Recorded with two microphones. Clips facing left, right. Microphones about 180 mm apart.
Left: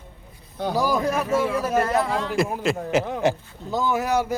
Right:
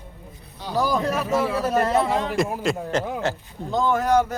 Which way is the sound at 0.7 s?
10° left (ahead or behind).